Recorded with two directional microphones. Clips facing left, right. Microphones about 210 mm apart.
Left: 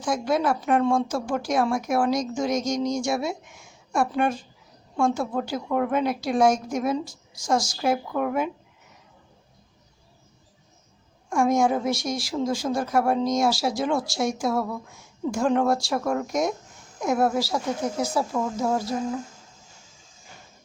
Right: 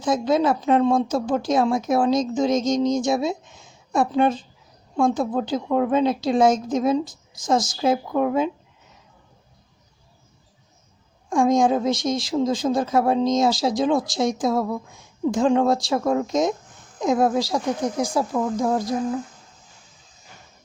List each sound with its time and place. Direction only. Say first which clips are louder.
0.0 s speech: right 4 dB; 20° right (ahead or behind)
11.3 s speech: right 3 dB; 15° right (ahead or behind)